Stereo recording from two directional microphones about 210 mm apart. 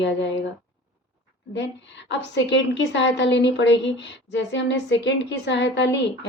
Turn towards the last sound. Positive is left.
turn(degrees=55)  # may be behind; listen again after turning